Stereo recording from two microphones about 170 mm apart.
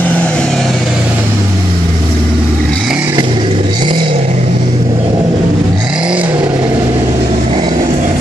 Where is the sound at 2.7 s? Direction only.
Centre (ahead or behind).